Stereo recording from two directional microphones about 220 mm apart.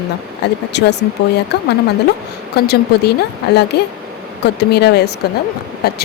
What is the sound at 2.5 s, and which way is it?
Speech, 45° left (ahead or behind).